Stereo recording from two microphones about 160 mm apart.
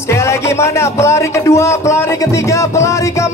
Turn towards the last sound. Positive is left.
turn(degrees=20)  # may be behind; listen again after turning